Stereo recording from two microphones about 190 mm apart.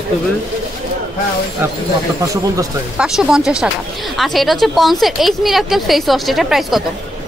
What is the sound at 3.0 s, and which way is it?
A woman's voice, 5° right (ahead or behind).